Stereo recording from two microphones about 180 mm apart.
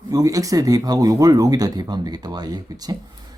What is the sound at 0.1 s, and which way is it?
Speech, 20° right (ahead or behind).